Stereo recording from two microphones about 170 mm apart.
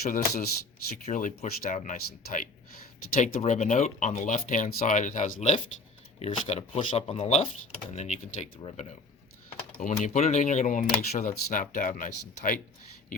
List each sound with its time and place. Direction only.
0.0 s speech: 65° left (ahead or behind)
1.0 s speech: 45° left (ahead or behind)
10.0 s speech: 45° left (ahead or behind)